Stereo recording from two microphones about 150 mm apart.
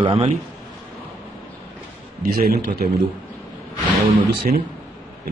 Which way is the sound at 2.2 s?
85° right.